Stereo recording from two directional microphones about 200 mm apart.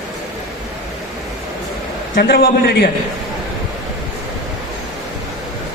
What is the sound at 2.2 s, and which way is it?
Speech, 50° left (ahead or behind).